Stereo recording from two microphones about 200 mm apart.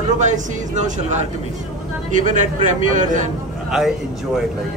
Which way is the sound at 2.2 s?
40° right (ahead or behind).